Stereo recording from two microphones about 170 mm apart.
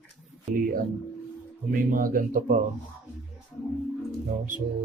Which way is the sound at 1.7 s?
55° right (ahead or behind).